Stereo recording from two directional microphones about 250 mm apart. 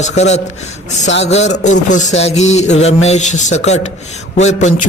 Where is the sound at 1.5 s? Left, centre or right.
Left.